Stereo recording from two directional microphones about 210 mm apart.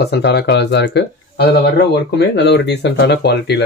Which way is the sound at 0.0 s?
50° left (ahead or behind).